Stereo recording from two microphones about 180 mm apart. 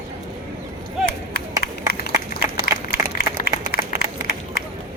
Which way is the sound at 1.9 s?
60° left (ahead or behind).